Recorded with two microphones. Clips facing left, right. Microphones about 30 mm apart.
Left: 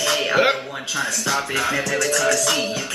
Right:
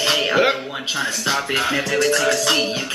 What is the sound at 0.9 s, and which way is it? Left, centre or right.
Music, right.